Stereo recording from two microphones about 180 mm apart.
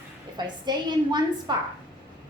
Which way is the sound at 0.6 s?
25° right (ahead or behind).